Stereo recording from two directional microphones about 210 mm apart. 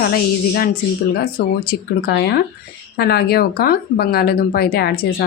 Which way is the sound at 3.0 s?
50° left (ahead or behind).